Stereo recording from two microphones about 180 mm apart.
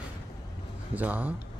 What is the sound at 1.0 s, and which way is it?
Speech, 10° right (ahead or behind).